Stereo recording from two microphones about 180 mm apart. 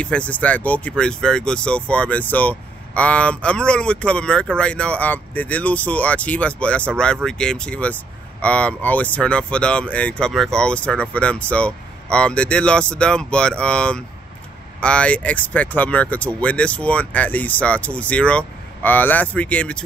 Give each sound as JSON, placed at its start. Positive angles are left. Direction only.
{"t": 0.0, "sound": "speech", "side_deg": 5}